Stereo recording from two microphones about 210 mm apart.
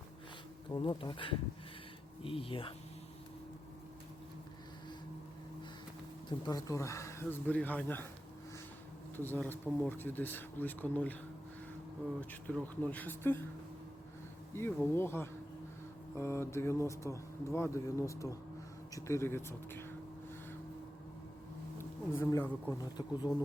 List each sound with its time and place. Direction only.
0.7 s speech: 20° left (ahead or behind)
6.2 s speech: 20° left (ahead or behind)
9.1 s speech: 10° left (ahead or behind)
12.2 s speech: 5° left (ahead or behind)
14.5 s speech: 10° left (ahead or behind)
21.8 s speech: 15° left (ahead or behind)